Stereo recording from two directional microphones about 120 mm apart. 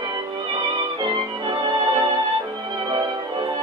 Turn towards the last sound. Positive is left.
turn(degrees=-40)  # may be behind; listen again after turning